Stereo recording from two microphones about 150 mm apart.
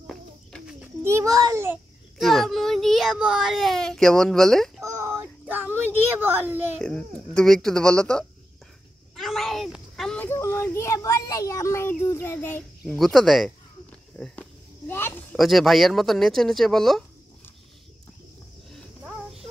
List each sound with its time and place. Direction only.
0.0 s bird: centre (ahead or behind)
1.0 s a child's voice: 20° right (ahead or behind)
2.1 s a child's voice: centre (ahead or behind)
4.8 s a sound: 15° right (ahead or behind)
6.8 s speech: 5° left (ahead or behind)
9.1 s a sound: centre (ahead or behind)
10.2 s speech: 15° left (ahead or behind)
14.1 s a sound: 5° left (ahead or behind)
15.3 s speech: centre (ahead or behind)